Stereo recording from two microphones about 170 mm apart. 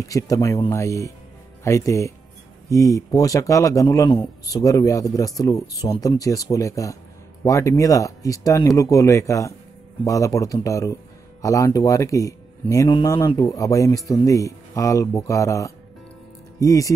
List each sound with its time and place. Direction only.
0.0 s speech: 20° left (ahead or behind)